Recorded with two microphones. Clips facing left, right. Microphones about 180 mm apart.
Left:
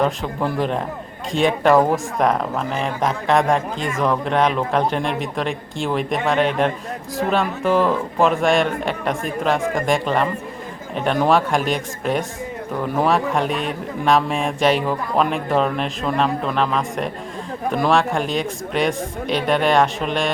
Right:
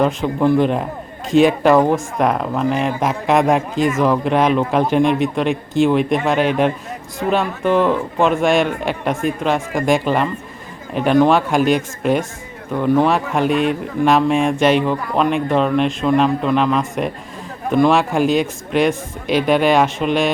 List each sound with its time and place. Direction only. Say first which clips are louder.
0.0 s speech: right 5 dB; centre (ahead or behind)